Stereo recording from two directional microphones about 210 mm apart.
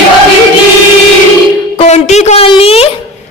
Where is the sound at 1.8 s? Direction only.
30° left (ahead or behind).